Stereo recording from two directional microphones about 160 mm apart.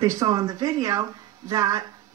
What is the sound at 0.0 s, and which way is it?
Speech, 20° right (ahead or behind).